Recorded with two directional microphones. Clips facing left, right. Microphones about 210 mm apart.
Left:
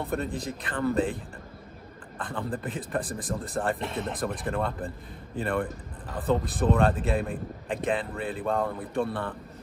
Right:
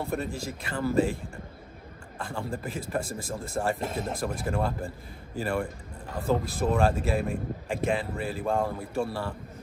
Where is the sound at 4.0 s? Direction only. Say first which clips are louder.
Even; 5° right (ahead or behind).